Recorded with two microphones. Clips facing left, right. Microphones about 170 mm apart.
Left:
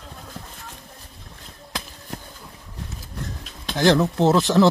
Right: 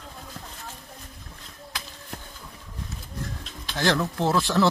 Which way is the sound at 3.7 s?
20° left (ahead or behind).